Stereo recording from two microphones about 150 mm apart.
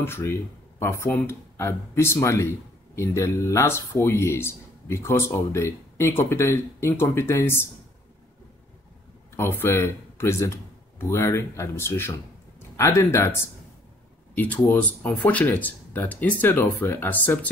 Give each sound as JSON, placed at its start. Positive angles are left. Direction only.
{"t": 0.0, "sound": "a man's voice", "side_deg": 15}
{"t": 9.4, "sound": "a man's voice", "side_deg": 15}